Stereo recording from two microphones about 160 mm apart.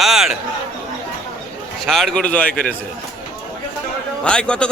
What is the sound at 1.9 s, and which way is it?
Speech, centre (ahead or behind).